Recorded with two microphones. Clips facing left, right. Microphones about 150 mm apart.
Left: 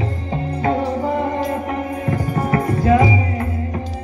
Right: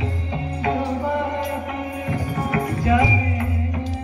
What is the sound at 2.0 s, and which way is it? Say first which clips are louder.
Music: left 4 dB; 40° left (ahead or behind).